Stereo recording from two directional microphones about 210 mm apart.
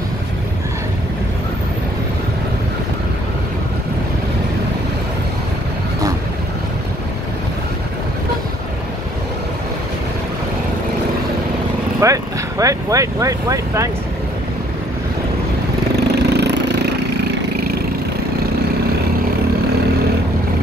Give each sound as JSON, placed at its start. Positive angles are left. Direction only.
{"t": 12.0, "sound": "speech", "side_deg": -15}
{"t": 16.0, "sound": "vehicle", "side_deg": -50}